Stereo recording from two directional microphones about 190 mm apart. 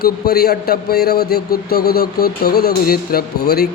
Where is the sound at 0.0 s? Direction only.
55° left (ahead or behind).